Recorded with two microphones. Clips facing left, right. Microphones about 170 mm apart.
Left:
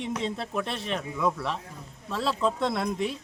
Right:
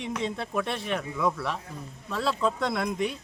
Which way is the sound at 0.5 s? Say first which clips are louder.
Right 1 dB; centre (ahead or behind).